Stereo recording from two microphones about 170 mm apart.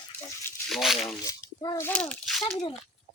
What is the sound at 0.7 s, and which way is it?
Speech, centre (ahead or behind).